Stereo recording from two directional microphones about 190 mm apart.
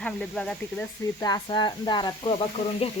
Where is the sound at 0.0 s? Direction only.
5° left (ahead or behind).